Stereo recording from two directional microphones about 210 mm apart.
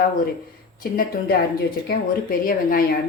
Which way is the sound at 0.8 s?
45° left (ahead or behind).